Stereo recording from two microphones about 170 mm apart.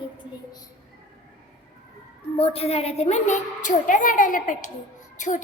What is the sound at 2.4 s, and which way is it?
A woman's voice, 35° left (ahead or behind).